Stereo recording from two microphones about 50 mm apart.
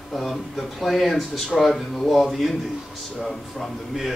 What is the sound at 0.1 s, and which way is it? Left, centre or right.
A man's voice, centre.